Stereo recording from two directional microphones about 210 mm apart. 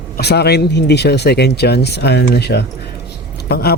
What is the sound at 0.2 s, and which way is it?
Speech, 50° left (ahead or behind).